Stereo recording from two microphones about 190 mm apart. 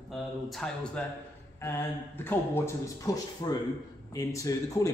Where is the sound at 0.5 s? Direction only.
5° left (ahead or behind).